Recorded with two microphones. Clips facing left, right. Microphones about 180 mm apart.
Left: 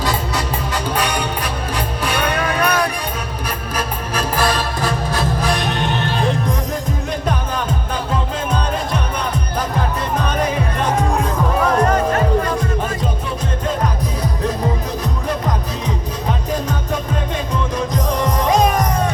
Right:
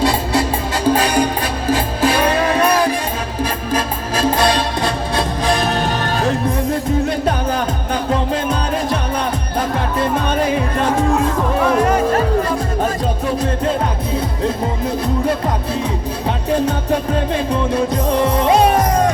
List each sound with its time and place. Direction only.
0.0 s music: 30° right (ahead or behind); by 6.3 s 45° right (ahead or behind)
17.5 s music: 30° right (ahead or behind)